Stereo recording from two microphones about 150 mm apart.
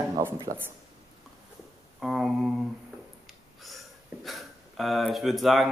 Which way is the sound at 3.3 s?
Centre (ahead or behind).